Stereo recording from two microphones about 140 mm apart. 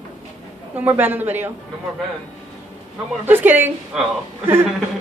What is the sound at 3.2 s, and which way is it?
A woman's voice, 15° right (ahead or behind).